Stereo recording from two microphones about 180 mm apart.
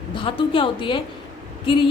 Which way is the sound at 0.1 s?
30° left (ahead or behind).